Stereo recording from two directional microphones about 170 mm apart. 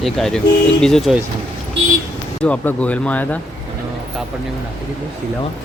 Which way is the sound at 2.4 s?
5° left (ahead or behind).